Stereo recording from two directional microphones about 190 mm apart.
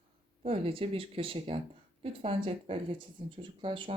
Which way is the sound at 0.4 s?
30° right (ahead or behind).